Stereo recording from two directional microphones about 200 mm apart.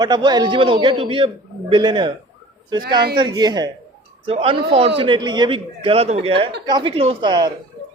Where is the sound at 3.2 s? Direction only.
20° right (ahead or behind).